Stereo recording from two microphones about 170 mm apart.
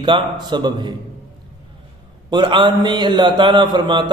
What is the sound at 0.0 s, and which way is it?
Speech, 25° right (ahead or behind).